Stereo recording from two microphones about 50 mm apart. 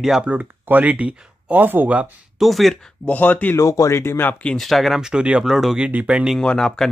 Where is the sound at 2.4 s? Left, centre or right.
Centre.